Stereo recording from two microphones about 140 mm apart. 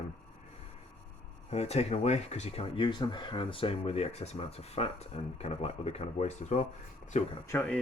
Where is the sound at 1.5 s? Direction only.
50° left (ahead or behind).